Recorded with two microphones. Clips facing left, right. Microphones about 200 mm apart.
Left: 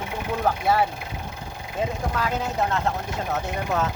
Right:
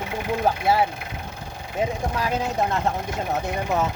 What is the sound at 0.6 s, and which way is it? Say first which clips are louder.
Speech: right 1 dB; 10° right (ahead or behind).